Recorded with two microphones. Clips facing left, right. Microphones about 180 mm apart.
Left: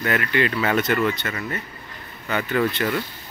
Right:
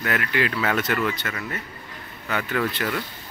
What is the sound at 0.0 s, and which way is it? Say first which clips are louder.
Speech: left 3 dB; centre (ahead or behind).